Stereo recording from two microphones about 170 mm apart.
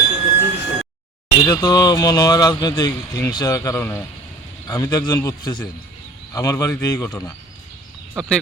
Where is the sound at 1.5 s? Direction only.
25° left (ahead or behind).